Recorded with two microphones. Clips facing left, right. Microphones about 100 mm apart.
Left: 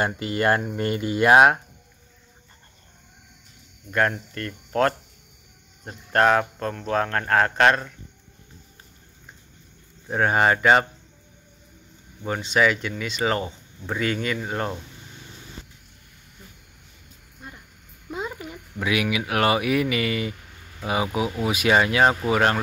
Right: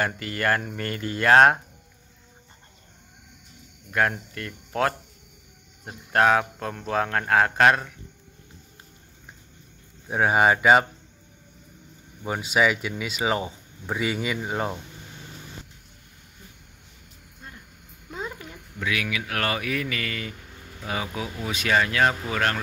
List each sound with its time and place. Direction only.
0.0 s speech: 20° left (ahead or behind)
3.9 s speech: 5° right (ahead or behind)
10.0 s speech: 5° right (ahead or behind)
12.2 s speech: 5° right (ahead or behind)
18.1 s a sound: 10° left (ahead or behind)
18.8 s speech: 20° left (ahead or behind)